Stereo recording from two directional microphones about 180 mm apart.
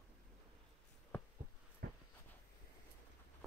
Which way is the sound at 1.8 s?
60° right (ahead or behind).